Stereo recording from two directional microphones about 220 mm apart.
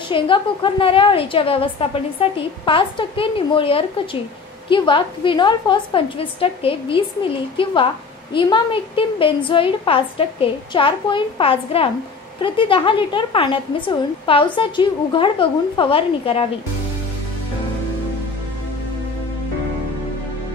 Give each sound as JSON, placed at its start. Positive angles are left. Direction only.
{"t": 0.1, "sound": "a woman's voice", "side_deg": 25}